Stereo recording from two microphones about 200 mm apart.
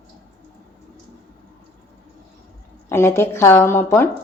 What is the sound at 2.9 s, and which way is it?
A woman's voice, 10° left (ahead or behind).